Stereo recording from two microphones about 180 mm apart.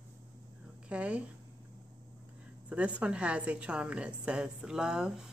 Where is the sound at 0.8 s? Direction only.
5° right (ahead or behind).